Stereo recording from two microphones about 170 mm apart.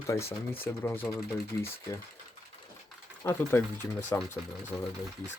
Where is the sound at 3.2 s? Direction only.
15° left (ahead or behind).